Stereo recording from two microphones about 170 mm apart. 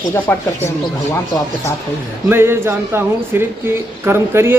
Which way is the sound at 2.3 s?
15° right (ahead or behind).